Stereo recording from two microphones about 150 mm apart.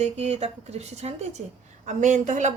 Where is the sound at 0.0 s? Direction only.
45° right (ahead or behind).